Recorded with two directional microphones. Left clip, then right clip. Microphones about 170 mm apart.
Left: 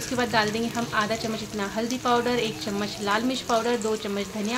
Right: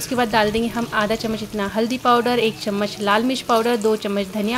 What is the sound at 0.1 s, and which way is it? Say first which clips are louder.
Speech: right 6 dB; 40° right (ahead or behind).